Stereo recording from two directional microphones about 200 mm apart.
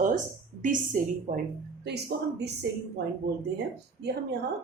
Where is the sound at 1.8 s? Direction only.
55° right (ahead or behind).